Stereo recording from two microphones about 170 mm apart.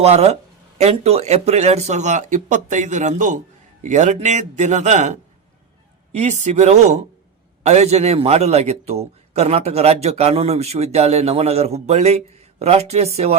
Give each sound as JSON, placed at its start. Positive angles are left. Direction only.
{"t": 0.0, "sound": "a man's voice", "side_deg": -40}
{"t": 6.1, "sound": "a man's voice", "side_deg": -45}